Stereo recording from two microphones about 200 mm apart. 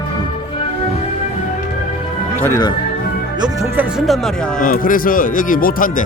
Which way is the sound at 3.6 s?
Centre (ahead or behind).